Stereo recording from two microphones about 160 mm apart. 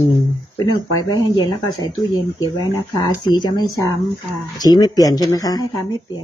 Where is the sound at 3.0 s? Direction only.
25° left (ahead or behind).